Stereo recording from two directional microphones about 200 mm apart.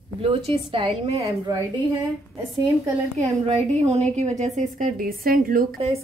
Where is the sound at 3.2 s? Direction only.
30° right (ahead or behind).